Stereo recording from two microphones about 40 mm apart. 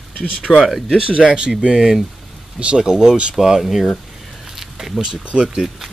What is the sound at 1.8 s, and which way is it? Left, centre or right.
Speech, centre.